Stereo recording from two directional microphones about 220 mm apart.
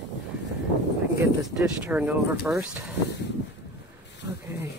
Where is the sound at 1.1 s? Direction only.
5° right (ahead or behind).